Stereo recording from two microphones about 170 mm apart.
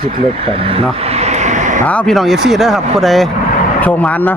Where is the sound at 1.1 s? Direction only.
40° right (ahead or behind).